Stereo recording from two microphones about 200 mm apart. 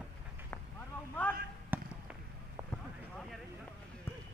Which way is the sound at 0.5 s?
10° left (ahead or behind).